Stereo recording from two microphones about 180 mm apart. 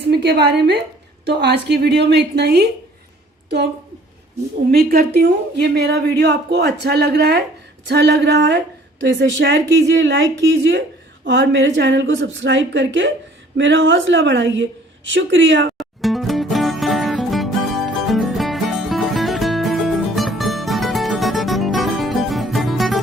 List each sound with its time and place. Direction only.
0.0 s a woman's voice: 70° right (ahead or behind)
4.7 s a woman's voice: 60° right (ahead or behind); by 12.0 s 75° right (ahead or behind)
12.2 s a woman's voice: 85° right
15.8 s music: centre (ahead or behind)